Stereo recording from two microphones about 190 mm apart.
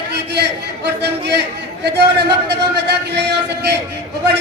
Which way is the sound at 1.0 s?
60° right (ahead or behind).